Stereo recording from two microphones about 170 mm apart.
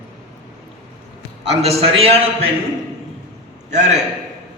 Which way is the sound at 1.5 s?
40° right (ahead or behind).